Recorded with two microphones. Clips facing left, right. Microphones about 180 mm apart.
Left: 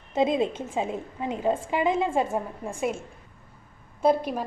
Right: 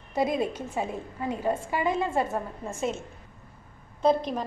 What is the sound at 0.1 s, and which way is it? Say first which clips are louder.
A woman's voice: left 3 dB; 20° left (ahead or behind).